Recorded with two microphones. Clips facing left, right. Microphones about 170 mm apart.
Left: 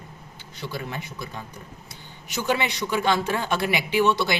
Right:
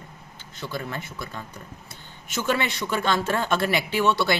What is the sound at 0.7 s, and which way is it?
Speech, 15° left (ahead or behind).